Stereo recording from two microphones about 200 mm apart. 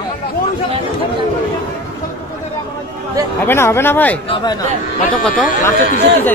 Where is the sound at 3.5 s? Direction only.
10° left (ahead or behind).